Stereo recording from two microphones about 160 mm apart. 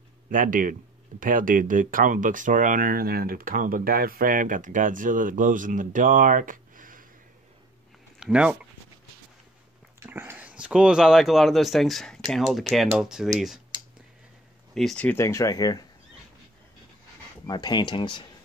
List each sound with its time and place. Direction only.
0.3 s speech: 60° right (ahead or behind)
8.2 s speech: 5° right (ahead or behind)
9.9 s speech: 15° right (ahead or behind)
14.7 s speech: centre (ahead or behind); by 15.8 s 25° left (ahead or behind)
17.5 s speech: 25° left (ahead or behind)